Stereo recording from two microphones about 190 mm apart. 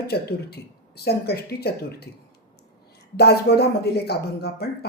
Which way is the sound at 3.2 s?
60° left (ahead or behind).